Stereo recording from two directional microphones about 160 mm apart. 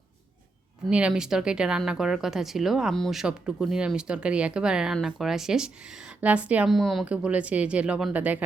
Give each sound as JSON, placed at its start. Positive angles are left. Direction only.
{"t": 0.9, "sound": "a woman's voice", "side_deg": -5}